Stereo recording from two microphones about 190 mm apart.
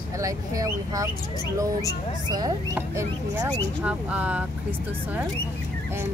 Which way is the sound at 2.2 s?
20° right (ahead or behind).